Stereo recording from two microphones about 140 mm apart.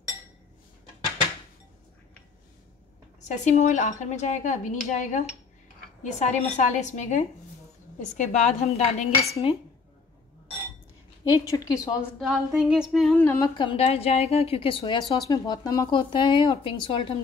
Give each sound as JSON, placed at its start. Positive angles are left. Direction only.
{"t": 3.3, "sound": "speech", "side_deg": 55}
{"t": 9.3, "sound": "speech", "side_deg": 40}
{"t": 11.5, "sound": "a woman's voice", "side_deg": 25}
{"t": 12.2, "sound": "a sound", "side_deg": -5}
{"t": 13.2, "sound": "speech", "side_deg": 15}
{"t": 13.6, "sound": "a woman's voice", "side_deg": 40}